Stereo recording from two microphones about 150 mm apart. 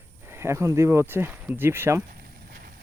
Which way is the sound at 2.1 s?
85° right.